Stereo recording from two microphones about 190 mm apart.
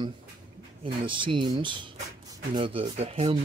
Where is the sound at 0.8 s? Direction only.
25° right (ahead or behind).